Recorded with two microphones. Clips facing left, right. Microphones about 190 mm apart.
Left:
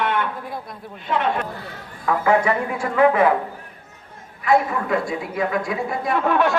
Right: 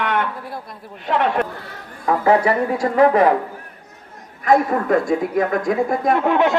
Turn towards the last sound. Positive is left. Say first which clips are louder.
# right 2 dB
turn(degrees=-20)  # may be behind; listen again after turning